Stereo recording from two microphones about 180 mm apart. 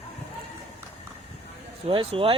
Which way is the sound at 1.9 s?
30° right (ahead or behind).